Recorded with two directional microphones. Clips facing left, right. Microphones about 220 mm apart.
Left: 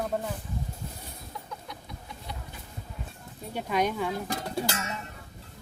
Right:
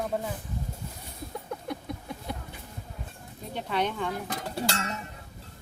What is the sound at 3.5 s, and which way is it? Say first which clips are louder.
Speech: left 2 dB; 10° left (ahead or behind).